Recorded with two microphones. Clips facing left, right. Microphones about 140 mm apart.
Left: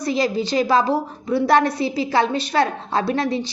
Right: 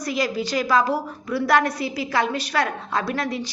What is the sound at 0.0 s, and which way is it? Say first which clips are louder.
A woman's voice: left 4 dB; 25° left (ahead or behind).